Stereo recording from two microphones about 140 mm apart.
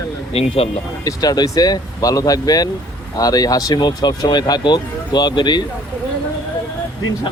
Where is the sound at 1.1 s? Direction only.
25° left (ahead or behind).